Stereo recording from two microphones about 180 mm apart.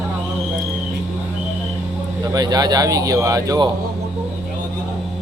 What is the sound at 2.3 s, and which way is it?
Speech, 20° right (ahead or behind).